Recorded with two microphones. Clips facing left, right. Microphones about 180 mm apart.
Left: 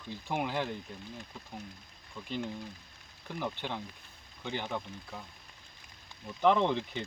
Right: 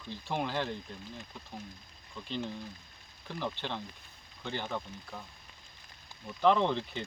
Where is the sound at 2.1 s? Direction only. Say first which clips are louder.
Even; 10° left (ahead or behind).